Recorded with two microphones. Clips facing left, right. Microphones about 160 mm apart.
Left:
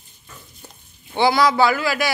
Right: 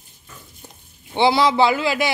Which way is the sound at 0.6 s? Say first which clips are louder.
Right 1 dB; 20° right (ahead or behind).